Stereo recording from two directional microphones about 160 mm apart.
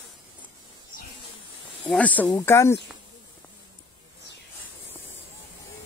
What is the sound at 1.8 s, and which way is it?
Speech, 10° left (ahead or behind).